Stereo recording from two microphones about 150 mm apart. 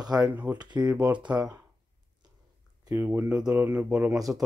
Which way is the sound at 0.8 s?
10° right (ahead or behind).